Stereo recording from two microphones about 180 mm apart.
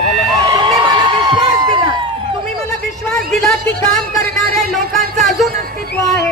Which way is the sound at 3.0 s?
Centre (ahead or behind).